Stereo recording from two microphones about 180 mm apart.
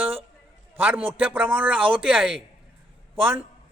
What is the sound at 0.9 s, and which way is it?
Speech, 30° right (ahead or behind).